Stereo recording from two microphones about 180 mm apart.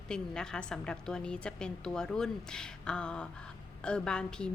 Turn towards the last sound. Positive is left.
turn(degrees=5)  # may be behind; listen again after turning